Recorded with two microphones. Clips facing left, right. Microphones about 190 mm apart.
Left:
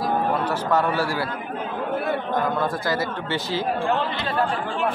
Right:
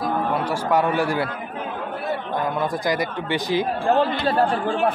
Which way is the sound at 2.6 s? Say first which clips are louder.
Right 1 dB; 15° right (ahead or behind).